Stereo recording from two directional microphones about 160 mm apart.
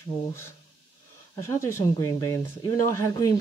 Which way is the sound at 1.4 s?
15° left (ahead or behind).